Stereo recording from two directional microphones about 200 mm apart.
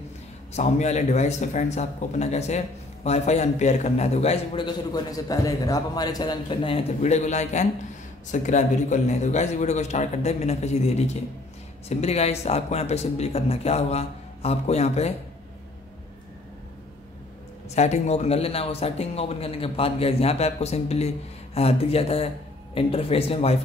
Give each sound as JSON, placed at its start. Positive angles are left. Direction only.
{"t": 0.5, "sound": "speech", "side_deg": 35}
{"t": 17.6, "sound": "speech", "side_deg": 35}